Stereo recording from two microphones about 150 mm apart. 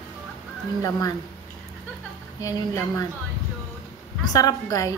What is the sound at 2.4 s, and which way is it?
Speech, 25° left (ahead or behind).